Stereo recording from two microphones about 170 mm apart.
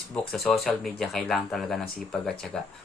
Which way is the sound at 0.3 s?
Centre (ahead or behind).